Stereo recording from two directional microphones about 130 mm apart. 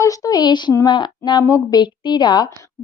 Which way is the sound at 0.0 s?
25° left (ahead or behind).